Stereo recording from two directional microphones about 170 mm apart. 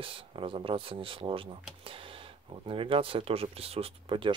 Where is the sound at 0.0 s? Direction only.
30° right (ahead or behind).